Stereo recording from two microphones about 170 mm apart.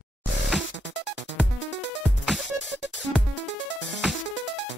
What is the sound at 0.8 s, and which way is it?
Music, 90° left.